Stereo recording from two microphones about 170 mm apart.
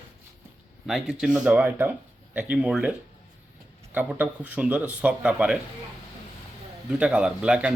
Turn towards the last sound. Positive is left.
turn(degrees=-5)  # may be behind; listen again after turning